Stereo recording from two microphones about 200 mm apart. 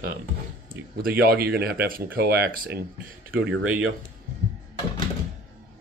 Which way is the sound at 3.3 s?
60° right (ahead or behind).